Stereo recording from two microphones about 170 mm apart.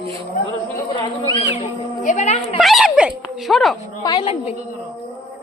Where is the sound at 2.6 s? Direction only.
Centre (ahead or behind).